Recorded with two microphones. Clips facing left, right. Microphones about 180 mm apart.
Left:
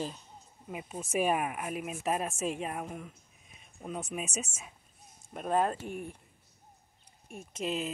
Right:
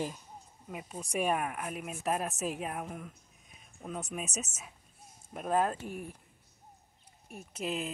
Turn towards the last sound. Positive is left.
turn(degrees=0)  # may be behind; listen again after turning